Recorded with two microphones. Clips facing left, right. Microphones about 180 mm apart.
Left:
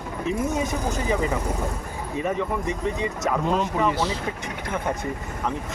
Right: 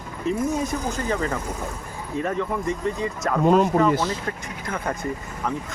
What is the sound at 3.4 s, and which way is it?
Speech, 45° right (ahead or behind).